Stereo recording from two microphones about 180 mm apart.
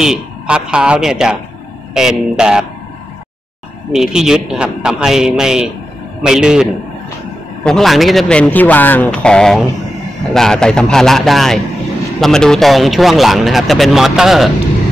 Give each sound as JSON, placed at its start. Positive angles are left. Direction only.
{"t": 0.0, "sound": "speech", "side_deg": -5}
{"t": 3.9, "sound": "speech", "side_deg": -5}